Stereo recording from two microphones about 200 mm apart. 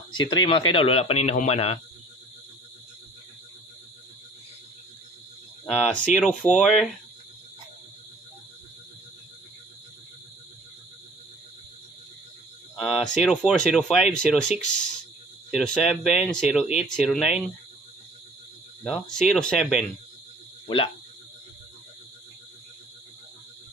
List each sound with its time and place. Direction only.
0.1 s speech: 20° left (ahead or behind)
5.9 s speech: 5° left (ahead or behind)
12.7 s a sound: centre (ahead or behind)
13.7 s speech: centre (ahead or behind)
15.5 s speech: centre (ahead or behind)
18.9 s speech: 5° left (ahead or behind)
20.6 s speech: 25° left (ahead or behind)